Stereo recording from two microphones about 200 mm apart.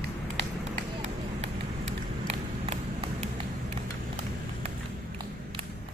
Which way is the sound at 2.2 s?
30° right (ahead or behind).